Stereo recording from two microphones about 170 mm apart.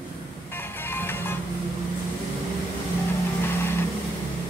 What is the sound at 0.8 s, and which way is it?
Music, 10° left (ahead or behind).